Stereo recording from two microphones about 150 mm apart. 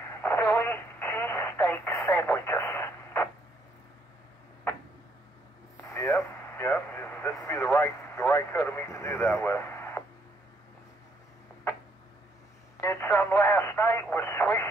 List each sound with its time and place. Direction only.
0.0 s radio: 15° left (ahead or behind)
5.9 s radio: 15° left (ahead or behind)
12.8 s a sound: 15° left (ahead or behind)
14.1 s radio: 15° left (ahead or behind)